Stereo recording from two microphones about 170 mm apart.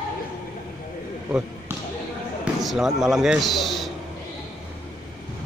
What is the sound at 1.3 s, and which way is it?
Basketball bounce, 10° right (ahead or behind).